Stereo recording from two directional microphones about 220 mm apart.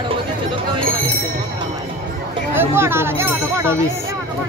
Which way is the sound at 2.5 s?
10° right (ahead or behind).